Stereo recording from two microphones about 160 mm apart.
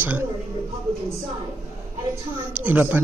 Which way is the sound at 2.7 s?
10° right (ahead or behind).